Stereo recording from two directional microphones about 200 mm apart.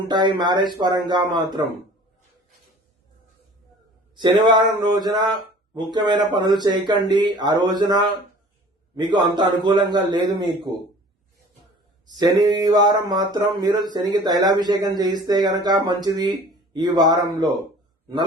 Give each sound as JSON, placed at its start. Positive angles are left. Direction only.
{"t": 0.1, "sound": "speech", "side_deg": -20}
{"t": 4.1, "sound": "speech", "side_deg": -20}
{"t": 12.2, "sound": "speech", "side_deg": -20}